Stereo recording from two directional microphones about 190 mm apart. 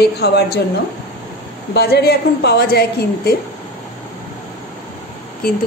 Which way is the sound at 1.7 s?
55° left (ahead or behind).